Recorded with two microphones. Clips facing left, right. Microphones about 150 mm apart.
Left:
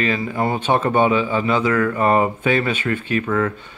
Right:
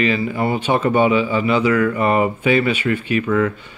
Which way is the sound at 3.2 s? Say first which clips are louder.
Right 2 dB; 45° left (ahead or behind).